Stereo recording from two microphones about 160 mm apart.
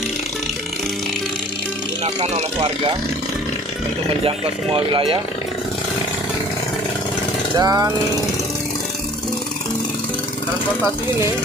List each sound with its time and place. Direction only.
4.9 s speech: 30° right (ahead or behind)
7.5 s speech: 25° right (ahead or behind)